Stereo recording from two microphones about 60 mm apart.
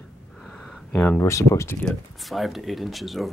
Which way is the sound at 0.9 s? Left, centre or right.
Left.